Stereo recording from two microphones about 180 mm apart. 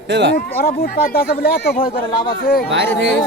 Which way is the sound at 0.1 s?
75° right (ahead or behind).